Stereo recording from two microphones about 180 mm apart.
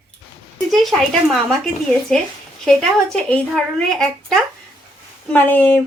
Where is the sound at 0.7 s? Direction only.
Centre (ahead or behind).